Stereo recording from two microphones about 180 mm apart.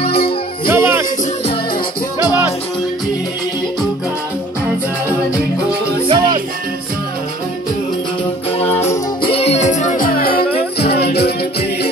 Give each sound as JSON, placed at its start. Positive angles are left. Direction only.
{"t": 0.0, "sound": "music", "side_deg": 60}
{"t": 0.7, "sound": "music", "side_deg": -15}
{"t": 6.0, "sound": "music", "side_deg": -25}
{"t": 8.8, "sound": "music", "side_deg": 30}